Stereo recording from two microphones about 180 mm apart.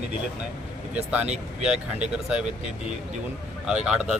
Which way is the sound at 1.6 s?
5° right (ahead or behind).